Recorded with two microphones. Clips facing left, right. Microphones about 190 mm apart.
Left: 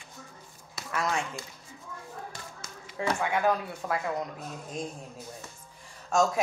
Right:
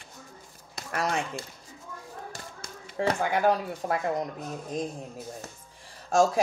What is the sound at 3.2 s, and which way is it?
Speech, 35° right (ahead or behind).